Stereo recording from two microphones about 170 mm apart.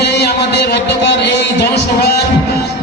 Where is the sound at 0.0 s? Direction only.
80° left.